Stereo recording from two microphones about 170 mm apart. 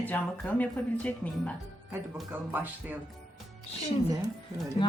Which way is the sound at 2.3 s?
10° right (ahead or behind).